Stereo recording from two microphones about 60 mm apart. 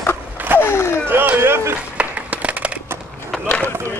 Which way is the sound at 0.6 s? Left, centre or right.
Left.